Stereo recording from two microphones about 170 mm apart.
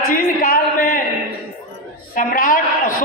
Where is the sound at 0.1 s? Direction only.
55° left (ahead or behind).